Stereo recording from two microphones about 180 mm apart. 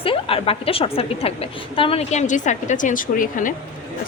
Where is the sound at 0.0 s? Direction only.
30° left (ahead or behind); by 3.5 s 50° left (ahead or behind).